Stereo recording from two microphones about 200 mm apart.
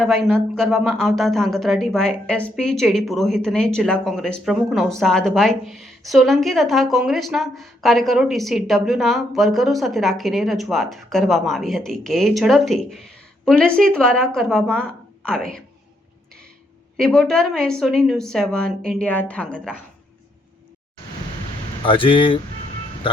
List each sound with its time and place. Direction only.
0.0 s a woman's voice: centre (ahead or behind)
17.0 s a woman's voice: 5° left (ahead or behind)
21.8 s speech: 25° left (ahead or behind)